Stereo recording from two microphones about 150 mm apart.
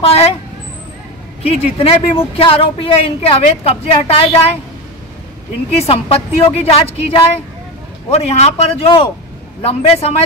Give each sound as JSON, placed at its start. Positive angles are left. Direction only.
{"t": 0.0, "sound": "a woman's voice", "side_deg": 40}
{"t": 1.4, "sound": "a woman's voice", "side_deg": 40}
{"t": 5.8, "sound": "a woman's voice", "side_deg": 40}